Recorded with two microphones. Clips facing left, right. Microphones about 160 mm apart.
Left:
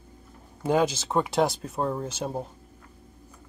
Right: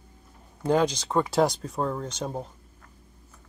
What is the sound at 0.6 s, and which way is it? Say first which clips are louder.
Speech: even; 5° left (ahead or behind).